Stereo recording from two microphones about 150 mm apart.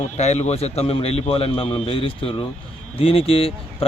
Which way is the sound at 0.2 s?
50° left (ahead or behind).